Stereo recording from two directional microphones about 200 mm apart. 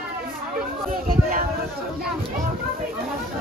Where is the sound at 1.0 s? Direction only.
45° right (ahead or behind).